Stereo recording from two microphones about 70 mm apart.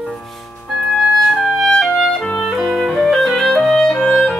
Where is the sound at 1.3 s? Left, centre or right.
Centre.